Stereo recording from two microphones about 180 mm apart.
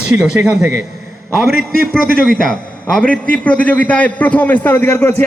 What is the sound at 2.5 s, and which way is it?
A man's voice, 5° left (ahead or behind).